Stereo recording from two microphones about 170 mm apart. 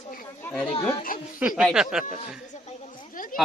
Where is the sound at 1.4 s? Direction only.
5° right (ahead or behind).